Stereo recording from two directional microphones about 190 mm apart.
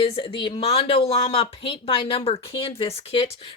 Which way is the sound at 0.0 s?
30° left (ahead or behind).